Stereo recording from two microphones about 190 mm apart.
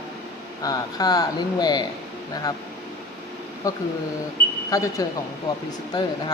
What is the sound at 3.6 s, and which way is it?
A woman's voice, 15° left (ahead or behind).